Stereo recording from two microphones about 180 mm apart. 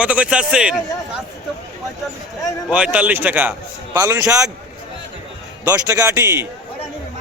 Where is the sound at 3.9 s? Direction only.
20° right (ahead or behind).